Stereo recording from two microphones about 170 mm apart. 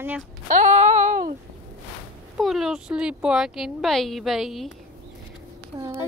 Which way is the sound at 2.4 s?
Centre (ahead or behind).